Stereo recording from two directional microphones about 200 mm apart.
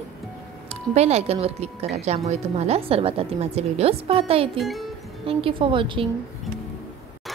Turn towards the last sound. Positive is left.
turn(degrees=-25)  # may be behind; listen again after turning